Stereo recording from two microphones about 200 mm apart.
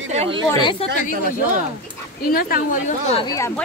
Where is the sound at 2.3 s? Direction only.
45° left (ahead or behind).